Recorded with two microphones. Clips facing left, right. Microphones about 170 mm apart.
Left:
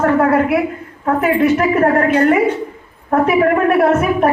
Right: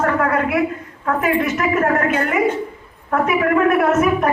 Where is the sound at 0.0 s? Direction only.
30° left (ahead or behind).